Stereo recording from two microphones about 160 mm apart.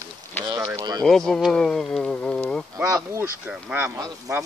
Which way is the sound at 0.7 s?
25° right (ahead or behind).